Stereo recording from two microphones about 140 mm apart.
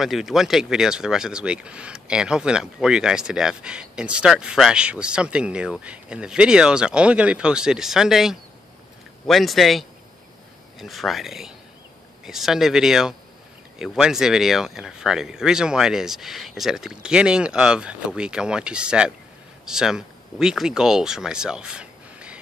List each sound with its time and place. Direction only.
0.0 s speech: centre (ahead or behind)